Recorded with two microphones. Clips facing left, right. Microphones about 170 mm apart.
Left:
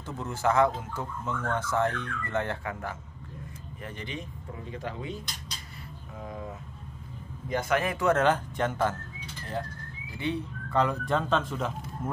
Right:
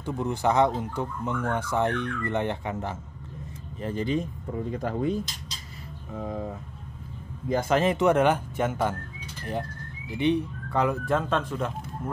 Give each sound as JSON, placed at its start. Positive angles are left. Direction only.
{"t": 0.0, "sound": "speech", "side_deg": -15}
{"t": 3.8, "sound": "speech", "side_deg": -35}
{"t": 6.1, "sound": "speech", "side_deg": -35}